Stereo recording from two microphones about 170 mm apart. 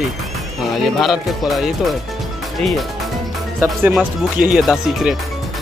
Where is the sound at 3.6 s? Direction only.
10° right (ahead or behind).